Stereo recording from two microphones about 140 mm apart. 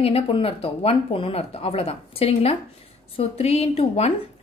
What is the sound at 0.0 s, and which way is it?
Speech, 45° left (ahead or behind).